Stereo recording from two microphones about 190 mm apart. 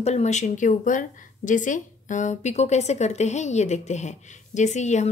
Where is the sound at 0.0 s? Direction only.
35° left (ahead or behind).